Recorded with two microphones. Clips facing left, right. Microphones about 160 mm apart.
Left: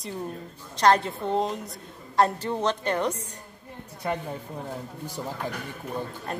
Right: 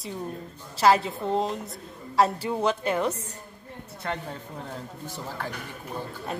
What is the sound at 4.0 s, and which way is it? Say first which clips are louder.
Speech: left 3 dB; 10° left (ahead or behind).